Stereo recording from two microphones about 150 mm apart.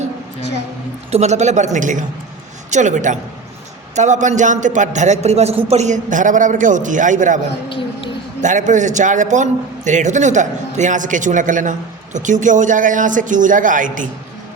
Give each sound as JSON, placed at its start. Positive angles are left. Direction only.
{"t": 1.1, "sound": "a man's voice", "side_deg": -50}
{"t": 8.4, "sound": "a man's voice", "side_deg": -55}